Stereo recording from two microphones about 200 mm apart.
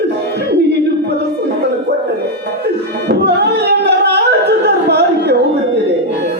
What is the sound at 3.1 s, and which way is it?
Singing, 55° right (ahead or behind).